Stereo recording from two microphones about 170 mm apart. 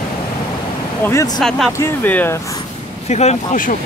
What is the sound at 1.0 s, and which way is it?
Speech, 15° left (ahead or behind).